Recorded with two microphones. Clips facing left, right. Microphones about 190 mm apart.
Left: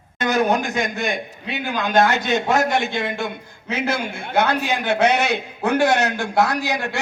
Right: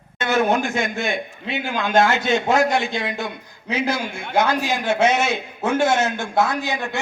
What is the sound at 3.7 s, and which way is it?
A man's voice, 55° left (ahead or behind).